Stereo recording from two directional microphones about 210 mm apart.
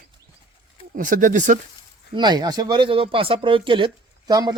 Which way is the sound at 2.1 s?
20° right (ahead or behind).